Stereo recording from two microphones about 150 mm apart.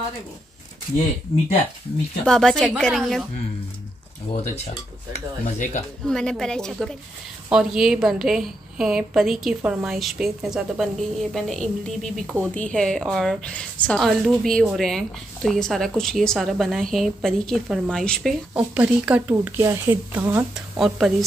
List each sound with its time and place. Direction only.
2.2 s a woman's voice: 5° left (ahead or behind)
5.4 s speech: 60° left (ahead or behind)
6.0 s a woman's voice: 5° left (ahead or behind)
18.5 s a woman's voice: 10° right (ahead or behind)